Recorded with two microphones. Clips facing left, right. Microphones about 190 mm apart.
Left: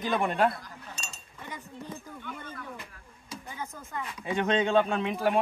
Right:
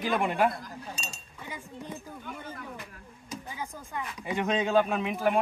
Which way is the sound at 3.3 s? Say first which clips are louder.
Right 1 dB; 15° right (ahead or behind).